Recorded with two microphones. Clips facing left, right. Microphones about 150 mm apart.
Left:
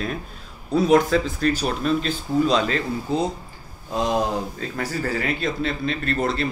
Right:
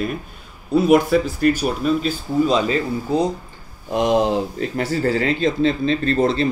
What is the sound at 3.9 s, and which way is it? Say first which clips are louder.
Speech: right 5 dB; 20° right (ahead or behind).